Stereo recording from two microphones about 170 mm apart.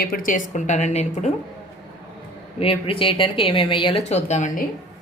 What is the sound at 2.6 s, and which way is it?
Speech, 35° left (ahead or behind).